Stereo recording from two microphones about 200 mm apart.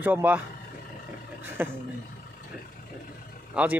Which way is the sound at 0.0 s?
10° right (ahead or behind).